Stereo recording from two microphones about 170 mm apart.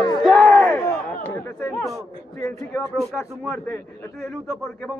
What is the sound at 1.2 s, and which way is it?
Chatter, 15° left (ahead or behind).